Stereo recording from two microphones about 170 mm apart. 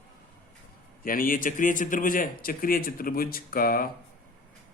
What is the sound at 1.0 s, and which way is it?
Speech, 55° left (ahead or behind).